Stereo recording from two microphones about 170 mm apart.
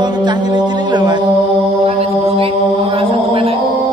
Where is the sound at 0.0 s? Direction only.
25° right (ahead or behind).